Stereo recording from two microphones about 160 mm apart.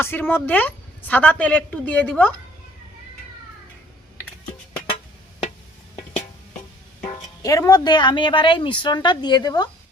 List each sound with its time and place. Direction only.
0.0 s a woman's voice: 15° left (ahead or behind)
7.4 s a woman's voice: 20° left (ahead or behind)